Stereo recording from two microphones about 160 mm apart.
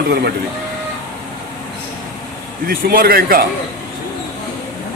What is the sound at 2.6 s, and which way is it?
Speech, 70° right (ahead or behind).